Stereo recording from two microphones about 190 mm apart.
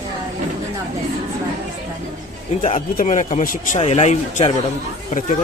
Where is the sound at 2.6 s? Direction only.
40° left (ahead or behind).